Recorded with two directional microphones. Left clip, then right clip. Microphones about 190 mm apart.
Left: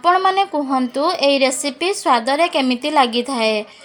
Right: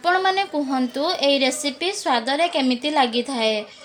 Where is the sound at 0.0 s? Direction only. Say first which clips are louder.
Left 5 dB; 15° left (ahead or behind).